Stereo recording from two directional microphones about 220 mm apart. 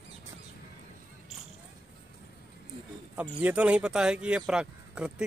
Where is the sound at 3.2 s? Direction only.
5° right (ahead or behind).